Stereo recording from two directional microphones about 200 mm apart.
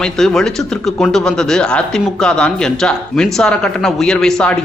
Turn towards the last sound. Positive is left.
turn(degrees=5)  # may be behind; listen again after turning